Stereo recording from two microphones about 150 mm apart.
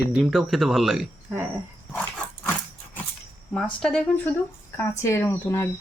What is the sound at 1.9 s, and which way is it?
Dog, 10° left (ahead or behind).